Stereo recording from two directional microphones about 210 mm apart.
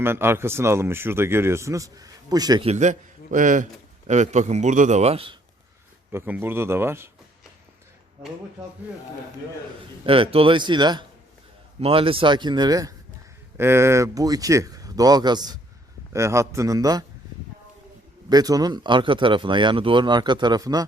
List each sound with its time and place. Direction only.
0.0 s speech: 10° right (ahead or behind)
6.1 s speech: 10° right (ahead or behind)
10.1 s speech: 25° right (ahead or behind)
18.3 s speech: 20° right (ahead or behind)